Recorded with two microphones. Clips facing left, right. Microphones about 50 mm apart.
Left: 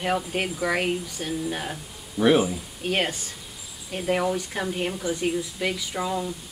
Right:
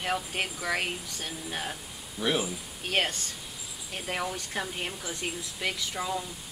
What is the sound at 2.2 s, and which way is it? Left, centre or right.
Speech, left.